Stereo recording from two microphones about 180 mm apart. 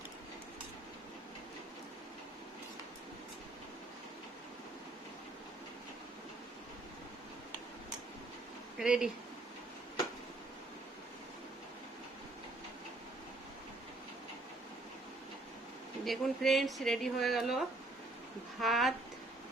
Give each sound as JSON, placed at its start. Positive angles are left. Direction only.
{"t": 8.8, "sound": "speech", "side_deg": -5}
{"t": 16.0, "sound": "speech", "side_deg": 0}